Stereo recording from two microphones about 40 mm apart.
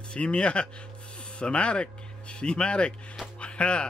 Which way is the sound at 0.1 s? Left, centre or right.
Left.